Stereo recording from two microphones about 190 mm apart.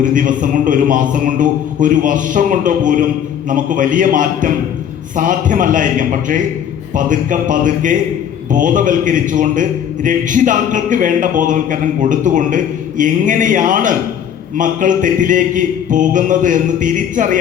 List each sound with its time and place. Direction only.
0.0 s a man's voice: 45° right (ahead or behind)